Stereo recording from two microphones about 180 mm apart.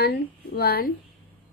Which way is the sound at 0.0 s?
60° left (ahead or behind).